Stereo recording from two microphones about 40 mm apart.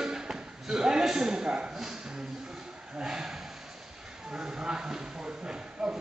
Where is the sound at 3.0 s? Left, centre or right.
Centre.